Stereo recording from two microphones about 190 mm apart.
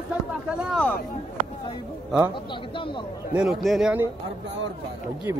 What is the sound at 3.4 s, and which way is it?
Speech, centre (ahead or behind).